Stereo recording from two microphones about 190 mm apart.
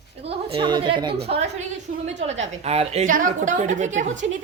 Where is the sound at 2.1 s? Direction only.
35° right (ahead or behind).